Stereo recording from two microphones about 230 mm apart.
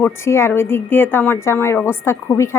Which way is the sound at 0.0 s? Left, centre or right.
Centre.